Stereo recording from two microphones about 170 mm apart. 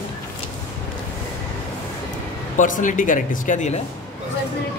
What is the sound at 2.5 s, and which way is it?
A man's voice, 50° left (ahead or behind).